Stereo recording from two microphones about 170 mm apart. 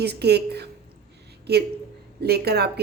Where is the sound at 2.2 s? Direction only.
70° right (ahead or behind).